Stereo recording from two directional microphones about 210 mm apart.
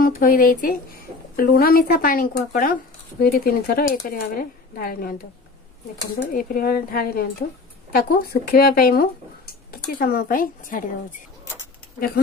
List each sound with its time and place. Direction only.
0.0 s speech: 40° left (ahead or behind)
6.1 s speech: 40° left (ahead or behind)